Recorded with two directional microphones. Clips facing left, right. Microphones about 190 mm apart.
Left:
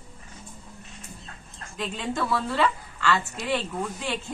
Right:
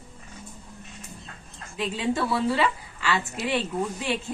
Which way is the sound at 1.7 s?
5° right (ahead or behind).